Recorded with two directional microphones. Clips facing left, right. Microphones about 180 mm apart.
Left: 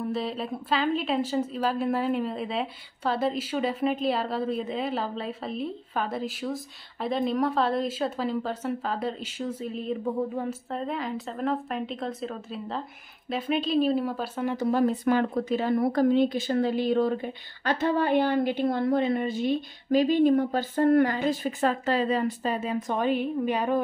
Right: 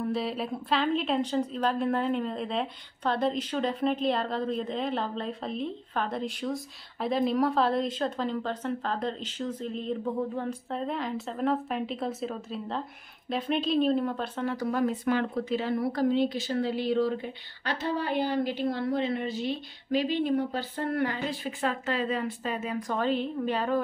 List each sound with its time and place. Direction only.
0.0 s a woman's voice: centre (ahead or behind)
14.6 s speech: 35° left (ahead or behind); by 23.8 s 15° left (ahead or behind)